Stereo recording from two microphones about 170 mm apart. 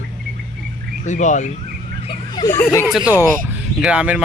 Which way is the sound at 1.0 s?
45° left (ahead or behind).